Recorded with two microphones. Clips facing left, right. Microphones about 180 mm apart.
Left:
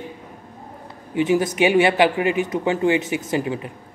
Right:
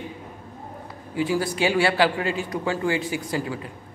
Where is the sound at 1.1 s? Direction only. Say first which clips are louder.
Left 5 dB; 20° left (ahead or behind).